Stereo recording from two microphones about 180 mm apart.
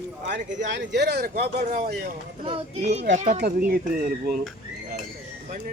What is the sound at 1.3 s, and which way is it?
Speech, 50° right (ahead or behind).